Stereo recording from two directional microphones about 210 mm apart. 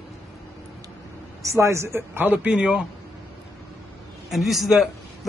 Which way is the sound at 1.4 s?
15° right (ahead or behind).